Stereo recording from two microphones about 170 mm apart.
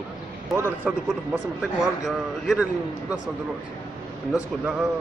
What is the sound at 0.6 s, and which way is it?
Speech, 10° right (ahead or behind).